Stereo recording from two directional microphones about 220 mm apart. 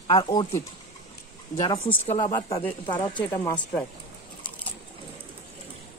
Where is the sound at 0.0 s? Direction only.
20° left (ahead or behind).